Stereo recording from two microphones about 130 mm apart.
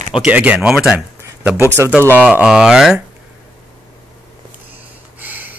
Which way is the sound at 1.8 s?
20° right (ahead or behind).